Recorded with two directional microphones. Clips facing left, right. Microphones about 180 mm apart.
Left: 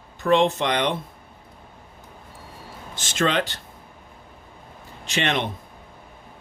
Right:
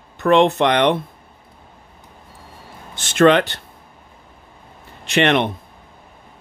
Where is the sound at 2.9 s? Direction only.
60° right (ahead or behind).